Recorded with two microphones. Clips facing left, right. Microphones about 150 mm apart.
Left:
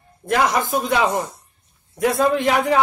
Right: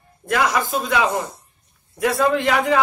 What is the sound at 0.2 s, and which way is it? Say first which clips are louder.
Speech: left 1 dB; 25° left (ahead or behind).